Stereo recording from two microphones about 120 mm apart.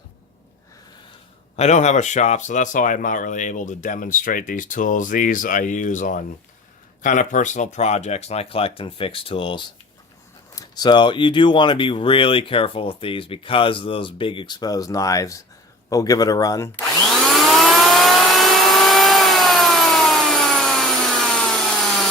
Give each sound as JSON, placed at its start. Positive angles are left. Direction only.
{"t": 1.5, "sound": "speech", "side_deg": 70}
{"t": 17.1, "sound": "vehicle", "side_deg": 0}